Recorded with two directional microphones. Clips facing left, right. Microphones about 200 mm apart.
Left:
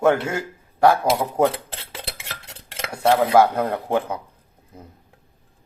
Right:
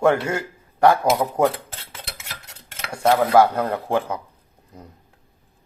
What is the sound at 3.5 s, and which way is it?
Speech, 10° left (ahead or behind).